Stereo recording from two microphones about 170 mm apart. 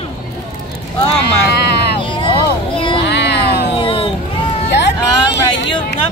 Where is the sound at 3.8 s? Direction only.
30° left (ahead or behind).